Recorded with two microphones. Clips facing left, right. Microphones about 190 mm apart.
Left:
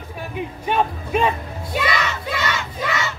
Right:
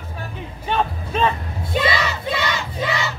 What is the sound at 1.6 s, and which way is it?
Music, 30° right (ahead or behind).